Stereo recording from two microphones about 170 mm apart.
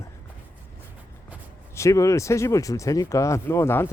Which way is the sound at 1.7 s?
15° left (ahead or behind).